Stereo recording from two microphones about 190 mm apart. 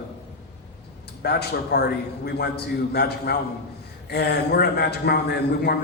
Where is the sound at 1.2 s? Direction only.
60° left (ahead or behind).